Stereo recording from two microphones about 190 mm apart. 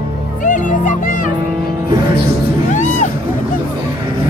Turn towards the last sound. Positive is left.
turn(degrees=40)  # may be behind; listen again after turning